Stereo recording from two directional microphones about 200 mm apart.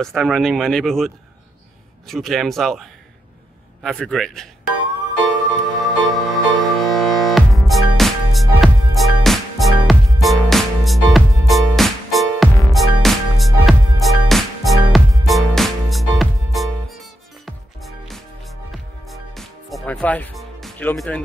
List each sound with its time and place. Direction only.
0.0 s speech: centre (ahead or behind)
5.8 s music: centre (ahead or behind)